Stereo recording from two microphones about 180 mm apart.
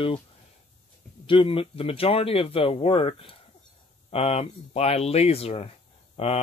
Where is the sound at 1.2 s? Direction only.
30° left (ahead or behind).